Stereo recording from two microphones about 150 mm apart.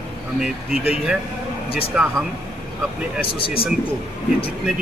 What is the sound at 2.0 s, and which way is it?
Speech, 5° right (ahead or behind).